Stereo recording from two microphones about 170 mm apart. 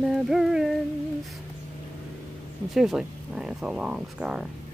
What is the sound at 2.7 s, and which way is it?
Speech, centre (ahead or behind).